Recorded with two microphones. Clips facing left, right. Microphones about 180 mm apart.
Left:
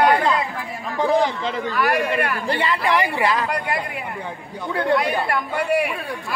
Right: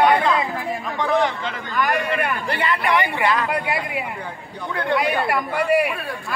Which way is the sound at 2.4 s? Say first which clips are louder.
Left 1 dB; 30° left (ahead or behind).